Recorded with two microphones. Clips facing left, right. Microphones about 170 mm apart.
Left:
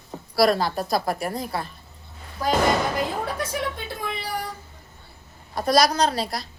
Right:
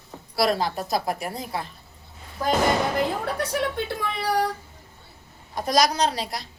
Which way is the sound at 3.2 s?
65° right (ahead or behind).